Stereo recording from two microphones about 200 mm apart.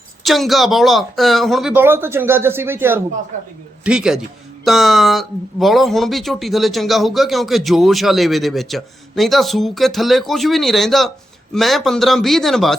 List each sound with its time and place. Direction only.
0.3 s speech: centre (ahead or behind)
3.3 s a man's voice: 40° right (ahead or behind)
3.8 s speech: 5° right (ahead or behind)